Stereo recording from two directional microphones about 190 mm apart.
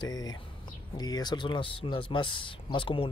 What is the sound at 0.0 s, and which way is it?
Speech, 20° left (ahead or behind).